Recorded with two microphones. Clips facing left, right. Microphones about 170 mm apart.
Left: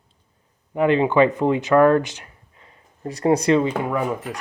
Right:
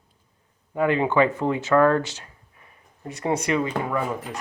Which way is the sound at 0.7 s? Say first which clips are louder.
Left 4 dB; 20° left (ahead or behind).